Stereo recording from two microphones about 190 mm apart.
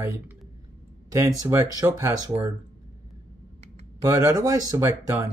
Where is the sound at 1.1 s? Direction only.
15° right (ahead or behind).